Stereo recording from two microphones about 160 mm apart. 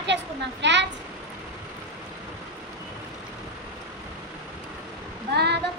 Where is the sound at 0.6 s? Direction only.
90° right.